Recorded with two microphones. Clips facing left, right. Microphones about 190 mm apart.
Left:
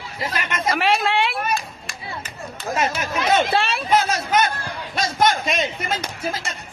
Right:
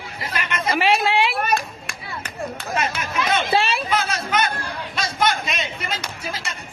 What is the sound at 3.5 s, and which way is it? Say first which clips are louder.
Speech: right 1 dB; centre (ahead or behind).